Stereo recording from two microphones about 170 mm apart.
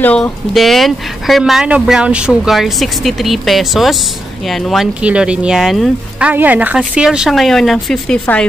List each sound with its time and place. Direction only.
0.0 s speech: 5° left (ahead or behind)